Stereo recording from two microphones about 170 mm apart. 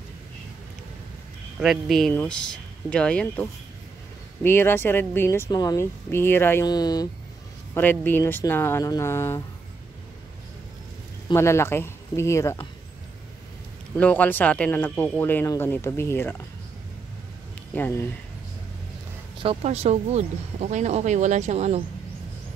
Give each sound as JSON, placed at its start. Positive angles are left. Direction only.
{"t": 1.6, "sound": "speech", "side_deg": 0}
{"t": 7.7, "sound": "speech", "side_deg": 10}
{"t": 11.3, "sound": "speech", "side_deg": 15}
{"t": 13.9, "sound": "speech", "side_deg": 10}
{"t": 17.7, "sound": "speech", "side_deg": 10}
{"t": 19.4, "sound": "speech", "side_deg": -35}